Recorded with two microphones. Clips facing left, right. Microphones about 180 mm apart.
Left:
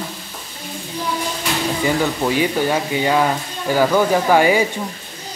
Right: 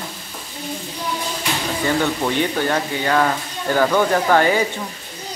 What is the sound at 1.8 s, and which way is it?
Speech, 10° left (ahead or behind).